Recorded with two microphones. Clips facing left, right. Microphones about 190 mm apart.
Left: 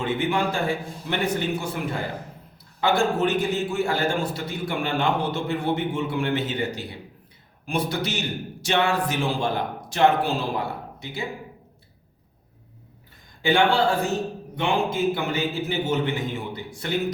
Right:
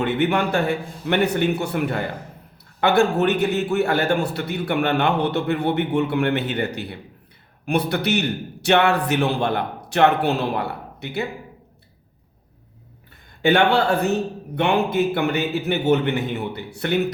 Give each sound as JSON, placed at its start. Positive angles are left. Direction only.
{"t": 0.0, "sound": "a man's voice", "side_deg": -65}
{"t": 13.4, "sound": "a man's voice", "side_deg": -65}